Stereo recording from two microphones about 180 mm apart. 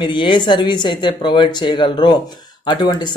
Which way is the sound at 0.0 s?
25° left (ahead or behind).